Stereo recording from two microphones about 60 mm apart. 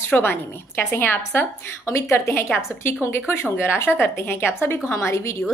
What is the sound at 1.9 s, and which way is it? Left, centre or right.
Speech, left.